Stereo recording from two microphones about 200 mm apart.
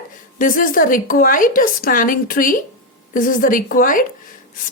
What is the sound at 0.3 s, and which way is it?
Speech, 45° left (ahead or behind).